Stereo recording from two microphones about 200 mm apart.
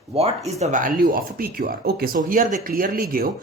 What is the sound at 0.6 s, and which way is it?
Speech, 40° right (ahead or behind).